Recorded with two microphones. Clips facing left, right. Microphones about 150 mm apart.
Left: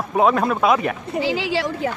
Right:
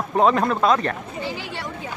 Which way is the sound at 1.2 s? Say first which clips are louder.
Left 9 dB; 90° left.